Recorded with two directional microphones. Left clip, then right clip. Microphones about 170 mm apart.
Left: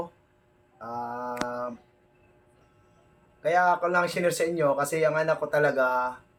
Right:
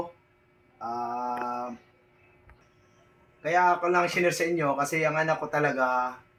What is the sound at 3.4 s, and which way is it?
Speech, 30° left (ahead or behind).